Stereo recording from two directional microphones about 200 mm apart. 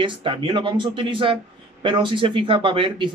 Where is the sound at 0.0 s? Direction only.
25° right (ahead or behind).